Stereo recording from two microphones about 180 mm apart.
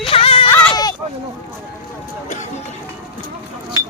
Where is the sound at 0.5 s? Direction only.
5° left (ahead or behind).